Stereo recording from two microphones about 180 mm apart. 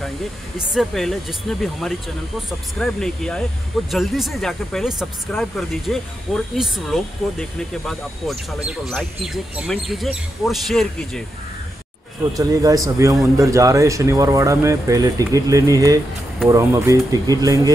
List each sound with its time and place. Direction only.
0.6 s speech: centre (ahead or behind)
12.4 s a man's voice: 20° right (ahead or behind)